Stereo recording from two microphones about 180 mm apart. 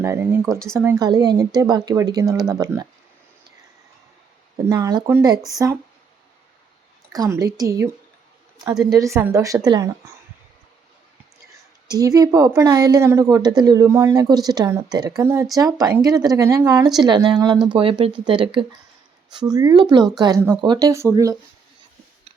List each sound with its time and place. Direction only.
0.0 s a woman's voice: 15° right (ahead or behind)
4.6 s a woman's voice: 20° right (ahead or behind)
7.1 s a woman's voice: 20° right (ahead or behind)
8.9 s a woman's voice: 15° right (ahead or behind)
11.9 s a woman's voice: 20° right (ahead or behind)